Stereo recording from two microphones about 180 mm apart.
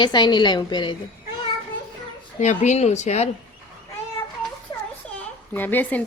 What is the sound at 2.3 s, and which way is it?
Speech, 40° left (ahead or behind).